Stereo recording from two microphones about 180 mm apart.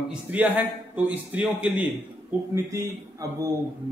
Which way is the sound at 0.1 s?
10° right (ahead or behind).